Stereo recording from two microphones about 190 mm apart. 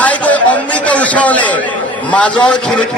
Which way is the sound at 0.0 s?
5° left (ahead or behind).